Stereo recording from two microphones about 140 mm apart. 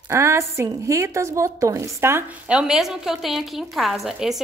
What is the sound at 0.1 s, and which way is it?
Speech, 20° right (ahead or behind).